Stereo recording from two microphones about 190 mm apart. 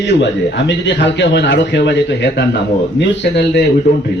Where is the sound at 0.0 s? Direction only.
65° left (ahead or behind).